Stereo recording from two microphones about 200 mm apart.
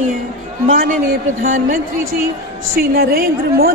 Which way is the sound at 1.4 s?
40° right (ahead or behind).